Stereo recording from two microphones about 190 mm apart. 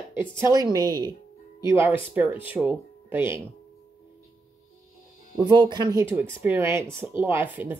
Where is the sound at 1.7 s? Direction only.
10° right (ahead or behind).